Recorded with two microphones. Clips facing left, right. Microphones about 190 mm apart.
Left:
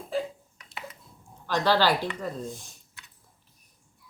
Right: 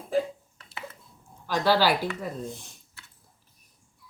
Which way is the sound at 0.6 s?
15° left (ahead or behind).